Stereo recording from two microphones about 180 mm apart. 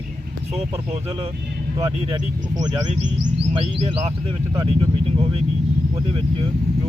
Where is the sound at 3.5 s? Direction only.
30° right (ahead or behind).